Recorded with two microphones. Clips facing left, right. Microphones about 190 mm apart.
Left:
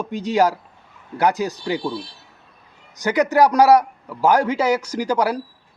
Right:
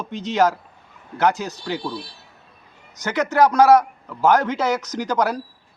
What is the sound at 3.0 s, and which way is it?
A man's voice, 15° left (ahead or behind).